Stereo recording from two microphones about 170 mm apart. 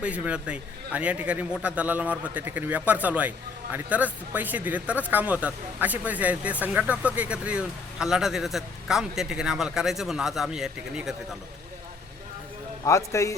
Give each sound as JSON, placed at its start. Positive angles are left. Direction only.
{"t": 0.0, "sound": "a man's voice", "side_deg": -5}
{"t": 12.8, "sound": "a man's voice", "side_deg": 20}